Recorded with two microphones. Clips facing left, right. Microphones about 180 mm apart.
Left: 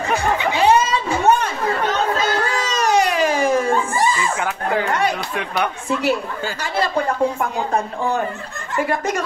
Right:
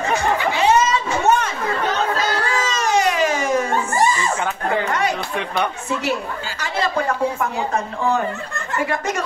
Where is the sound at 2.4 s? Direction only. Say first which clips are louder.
Even; 35° left (ahead or behind).